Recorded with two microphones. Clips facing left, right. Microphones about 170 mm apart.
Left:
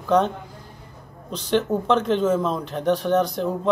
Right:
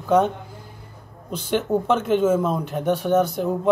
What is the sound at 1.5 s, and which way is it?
Speech, 5° right (ahead or behind).